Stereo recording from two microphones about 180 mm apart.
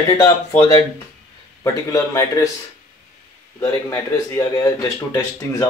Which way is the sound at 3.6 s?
15° left (ahead or behind).